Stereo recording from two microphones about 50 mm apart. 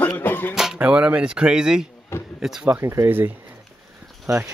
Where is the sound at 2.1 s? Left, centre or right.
Left.